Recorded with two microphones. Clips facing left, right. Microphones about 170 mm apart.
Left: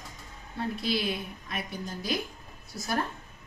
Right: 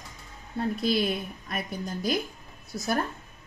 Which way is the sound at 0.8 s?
50° right (ahead or behind).